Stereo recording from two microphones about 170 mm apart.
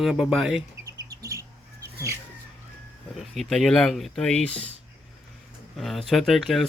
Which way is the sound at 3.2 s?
Centre (ahead or behind).